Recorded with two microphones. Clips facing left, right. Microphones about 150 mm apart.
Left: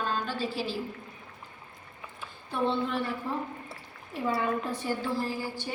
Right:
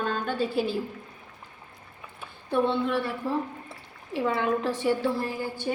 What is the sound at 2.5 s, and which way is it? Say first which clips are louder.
Speech: right 4 dB; 60° right (ahead or behind).